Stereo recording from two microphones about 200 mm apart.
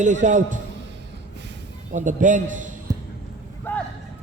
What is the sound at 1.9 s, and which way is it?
Speech, 40° right (ahead or behind).